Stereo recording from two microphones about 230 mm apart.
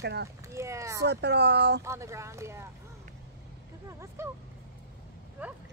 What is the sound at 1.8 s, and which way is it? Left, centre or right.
Speech, centre.